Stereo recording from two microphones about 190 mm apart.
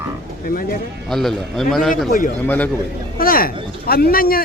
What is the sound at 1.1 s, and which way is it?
A man's voice, centre (ahead or behind).